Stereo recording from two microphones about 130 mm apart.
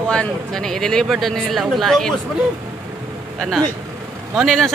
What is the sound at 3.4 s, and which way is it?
Speech, centre (ahead or behind).